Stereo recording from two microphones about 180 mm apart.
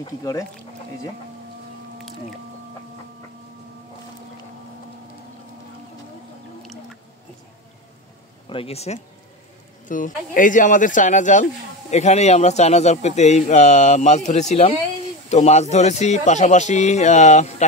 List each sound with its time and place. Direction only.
0.0 s speech: 20° left (ahead or behind)
8.5 s a man's voice: 30° left (ahead or behind)
9.8 s a man's voice: 45° left (ahead or behind)